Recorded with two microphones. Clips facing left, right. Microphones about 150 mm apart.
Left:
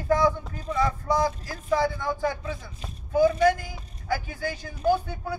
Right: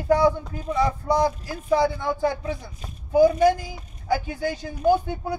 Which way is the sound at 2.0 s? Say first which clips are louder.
Right 3 dB; 30° right (ahead or behind).